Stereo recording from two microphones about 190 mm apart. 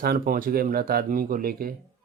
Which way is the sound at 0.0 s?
50° right (ahead or behind).